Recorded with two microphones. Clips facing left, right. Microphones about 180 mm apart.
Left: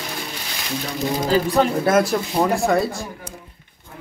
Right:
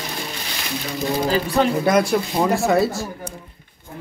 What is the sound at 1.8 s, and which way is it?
Speech, centre (ahead or behind).